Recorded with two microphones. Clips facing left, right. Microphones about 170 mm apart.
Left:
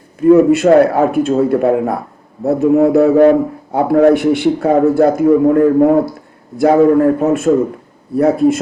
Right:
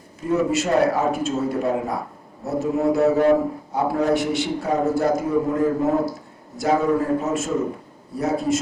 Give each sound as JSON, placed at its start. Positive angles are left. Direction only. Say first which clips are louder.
{"t": 0.2, "sound": "a man's voice", "louder": "left 13 dB", "side_deg": 60}